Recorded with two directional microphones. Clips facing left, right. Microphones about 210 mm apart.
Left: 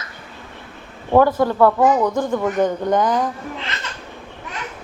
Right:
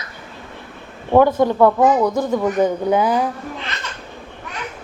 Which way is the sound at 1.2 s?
15° right (ahead or behind).